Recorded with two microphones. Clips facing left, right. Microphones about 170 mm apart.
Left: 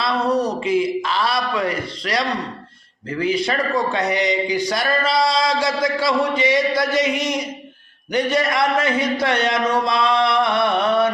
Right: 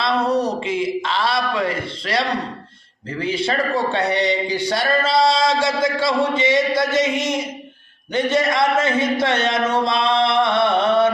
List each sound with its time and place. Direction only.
0.0 s a man's voice: 30° right (ahead or behind)